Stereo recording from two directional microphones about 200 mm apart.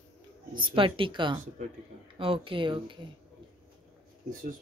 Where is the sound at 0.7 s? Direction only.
25° right (ahead or behind).